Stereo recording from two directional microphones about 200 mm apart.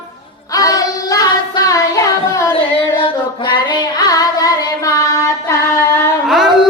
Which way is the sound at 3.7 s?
20° left (ahead or behind).